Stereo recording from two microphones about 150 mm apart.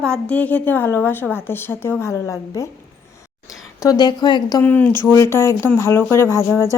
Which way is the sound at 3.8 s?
25° left (ahead or behind).